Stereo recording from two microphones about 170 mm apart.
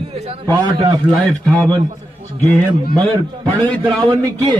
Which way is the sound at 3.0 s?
10° left (ahead or behind).